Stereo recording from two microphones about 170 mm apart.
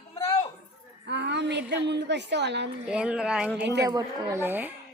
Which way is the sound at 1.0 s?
90° right.